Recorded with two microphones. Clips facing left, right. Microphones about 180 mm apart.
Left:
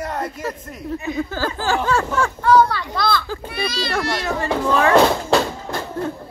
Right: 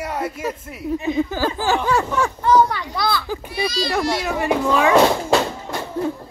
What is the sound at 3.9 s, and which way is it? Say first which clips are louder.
Speech: even; 15° right (ahead or behind).